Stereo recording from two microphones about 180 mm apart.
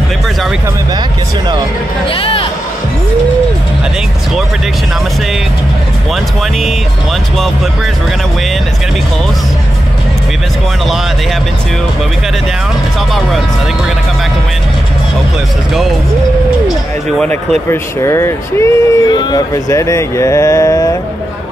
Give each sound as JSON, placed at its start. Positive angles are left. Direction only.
{"t": 2.1, "sound": "speech", "side_deg": 30}
{"t": 17.6, "sound": "speech", "side_deg": 15}